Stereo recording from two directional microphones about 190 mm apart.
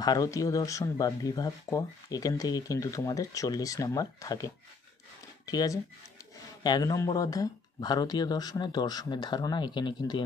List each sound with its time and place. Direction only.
0.0 s speech: 20° left (ahead or behind)
5.5 s speech: 20° left (ahead or behind)